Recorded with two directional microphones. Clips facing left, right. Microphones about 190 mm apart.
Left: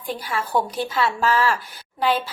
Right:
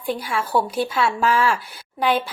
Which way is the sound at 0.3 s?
10° right (ahead or behind).